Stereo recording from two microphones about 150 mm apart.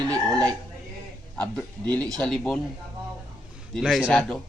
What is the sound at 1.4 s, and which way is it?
A man's voice, 10° left (ahead or behind).